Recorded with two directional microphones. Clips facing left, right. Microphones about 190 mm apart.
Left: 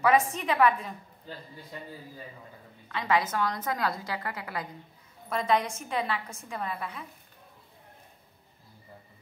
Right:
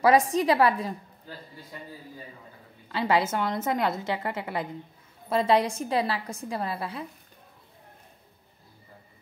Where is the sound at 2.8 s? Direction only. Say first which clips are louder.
Right 3 dB; 30° right (ahead or behind).